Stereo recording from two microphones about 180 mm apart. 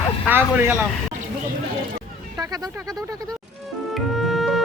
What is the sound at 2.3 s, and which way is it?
Speech, 20° right (ahead or behind).